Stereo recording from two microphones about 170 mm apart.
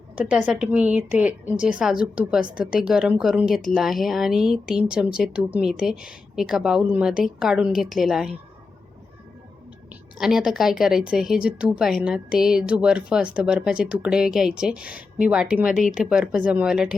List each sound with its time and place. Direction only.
0.2 s a woman's voice: 5° right (ahead or behind)
9.9 s a woman's voice: 5° right (ahead or behind)